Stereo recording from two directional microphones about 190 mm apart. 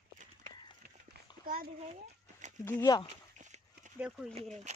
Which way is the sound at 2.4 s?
40° right (ahead or behind).